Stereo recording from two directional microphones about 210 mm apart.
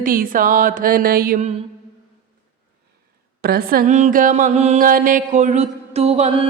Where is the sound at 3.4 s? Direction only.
45° right (ahead or behind); by 6.5 s 30° right (ahead or behind).